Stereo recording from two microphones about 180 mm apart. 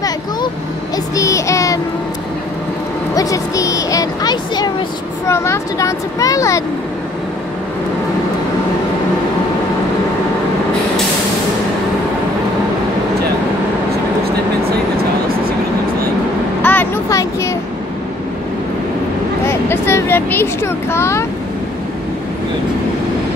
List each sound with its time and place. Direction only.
0.9 s child singing: 20° left (ahead or behind)
3.2 s speech: 20° left (ahead or behind)
16.6 s a sound: 10° left (ahead or behind)
19.4 s speech: 15° left (ahead or behind)